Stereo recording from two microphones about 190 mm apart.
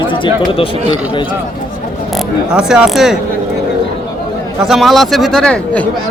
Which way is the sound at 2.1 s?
5° right (ahead or behind).